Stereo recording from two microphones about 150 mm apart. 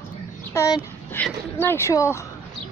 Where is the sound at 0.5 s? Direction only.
20° left (ahead or behind).